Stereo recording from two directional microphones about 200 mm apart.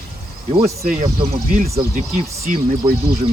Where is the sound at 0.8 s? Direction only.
45° right (ahead or behind).